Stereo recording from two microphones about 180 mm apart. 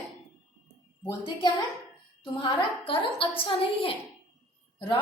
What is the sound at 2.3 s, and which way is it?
A woman's voice, 30° left (ahead or behind).